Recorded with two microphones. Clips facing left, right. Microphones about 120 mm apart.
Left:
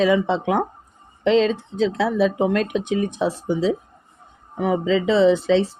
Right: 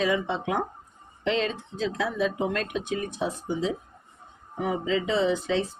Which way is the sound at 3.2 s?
90° left.